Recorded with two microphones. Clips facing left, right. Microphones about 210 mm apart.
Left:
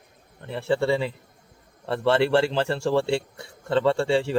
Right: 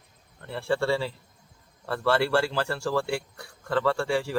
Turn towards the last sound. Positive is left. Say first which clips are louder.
# left 4 dB
turn(degrees=25)  # may be behind; listen again after turning